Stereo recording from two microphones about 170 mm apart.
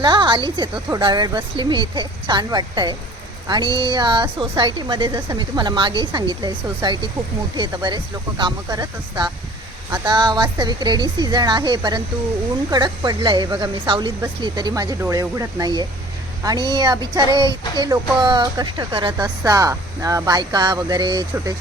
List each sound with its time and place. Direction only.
0.0 s a woman's voice: 25° right (ahead or behind)